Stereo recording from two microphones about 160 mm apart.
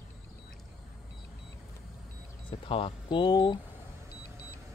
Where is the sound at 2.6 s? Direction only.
35° left (ahead or behind).